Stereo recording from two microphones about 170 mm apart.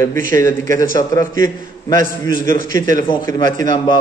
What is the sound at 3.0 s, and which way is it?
Speech, 25° left (ahead or behind).